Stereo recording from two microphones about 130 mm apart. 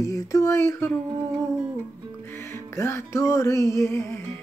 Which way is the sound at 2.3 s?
20° left (ahead or behind).